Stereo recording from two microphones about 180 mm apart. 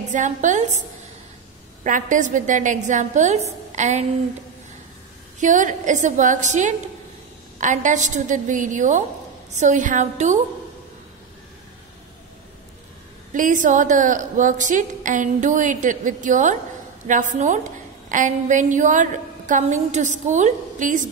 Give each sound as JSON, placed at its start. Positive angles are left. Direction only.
{"t": 0.1, "sound": "a woman's voice", "side_deg": -45}
{"t": 1.9, "sound": "a woman's voice", "side_deg": -45}
{"t": 5.4, "sound": "a woman's voice", "side_deg": -45}
{"t": 13.3, "sound": "a woman's voice", "side_deg": -45}